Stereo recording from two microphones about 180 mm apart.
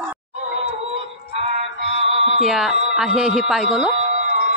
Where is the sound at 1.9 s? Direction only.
35° right (ahead or behind).